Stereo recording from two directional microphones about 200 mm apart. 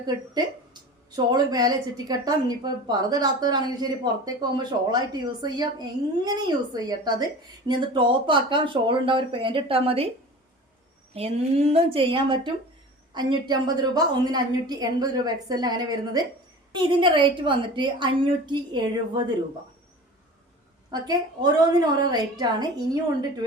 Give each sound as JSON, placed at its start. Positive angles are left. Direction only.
{"t": 0.0, "sound": "a woman's voice", "side_deg": -20}
{"t": 11.1, "sound": "a woman's voice", "side_deg": -30}
{"t": 20.9, "sound": "a woman's voice", "side_deg": -20}